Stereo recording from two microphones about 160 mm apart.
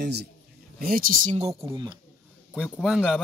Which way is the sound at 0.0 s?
90° right.